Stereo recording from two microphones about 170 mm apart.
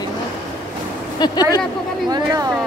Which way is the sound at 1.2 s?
25° left (ahead or behind).